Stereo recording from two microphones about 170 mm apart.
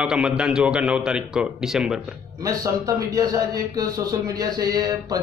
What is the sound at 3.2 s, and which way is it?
A man's voice, 20° right (ahead or behind).